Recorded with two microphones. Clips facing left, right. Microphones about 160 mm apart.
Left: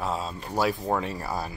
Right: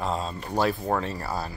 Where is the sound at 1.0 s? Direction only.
15° left (ahead or behind).